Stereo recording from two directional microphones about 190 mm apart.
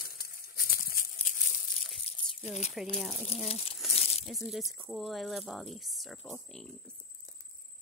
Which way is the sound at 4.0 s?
35° left (ahead or behind).